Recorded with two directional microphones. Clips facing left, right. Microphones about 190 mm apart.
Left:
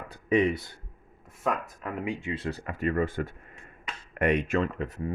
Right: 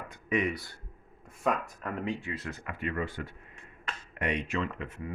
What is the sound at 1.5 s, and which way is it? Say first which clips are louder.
Speech: even; centre (ahead or behind).